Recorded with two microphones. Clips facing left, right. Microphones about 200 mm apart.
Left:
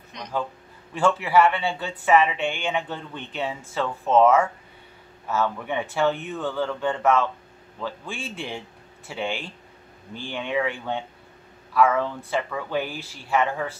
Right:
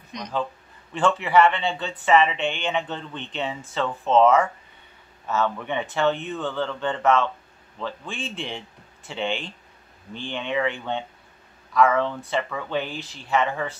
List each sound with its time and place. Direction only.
0.1 s speech: 15° right (ahead or behind)
0.9 s speech: 10° left (ahead or behind)